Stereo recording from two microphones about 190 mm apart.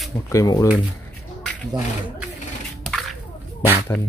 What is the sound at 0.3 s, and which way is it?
Speech, 15° left (ahead or behind).